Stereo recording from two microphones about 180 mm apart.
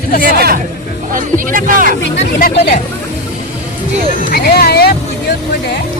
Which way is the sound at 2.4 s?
50° left (ahead or behind).